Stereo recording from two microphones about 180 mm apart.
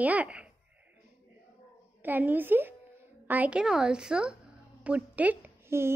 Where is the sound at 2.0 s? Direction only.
10° right (ahead or behind).